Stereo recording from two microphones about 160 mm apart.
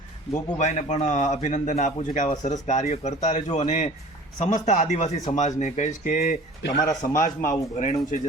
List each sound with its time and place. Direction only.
0.6 s a man's voice: 45° left (ahead or behind)